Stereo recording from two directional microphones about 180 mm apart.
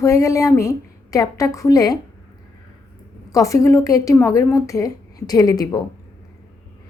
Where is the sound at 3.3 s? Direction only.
20° left (ahead or behind).